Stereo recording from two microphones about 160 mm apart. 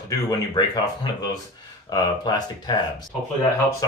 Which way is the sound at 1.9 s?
25° left (ahead or behind).